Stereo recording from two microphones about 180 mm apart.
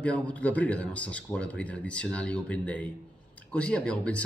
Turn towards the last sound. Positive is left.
turn(degrees=5)  # may be behind; listen again after turning